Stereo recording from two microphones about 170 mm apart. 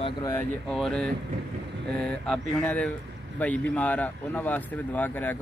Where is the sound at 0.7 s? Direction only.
5° left (ahead or behind).